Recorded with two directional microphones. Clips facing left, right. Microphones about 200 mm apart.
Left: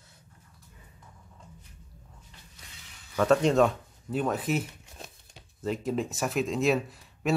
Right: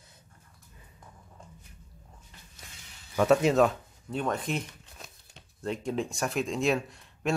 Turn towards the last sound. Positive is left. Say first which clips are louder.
# left 2 dB
turn(degrees=5)  # may be behind; listen again after turning